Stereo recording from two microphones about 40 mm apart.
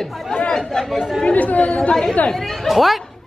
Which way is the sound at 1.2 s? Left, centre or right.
Left.